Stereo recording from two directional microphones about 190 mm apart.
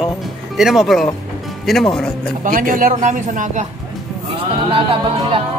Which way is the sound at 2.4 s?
45° right (ahead or behind).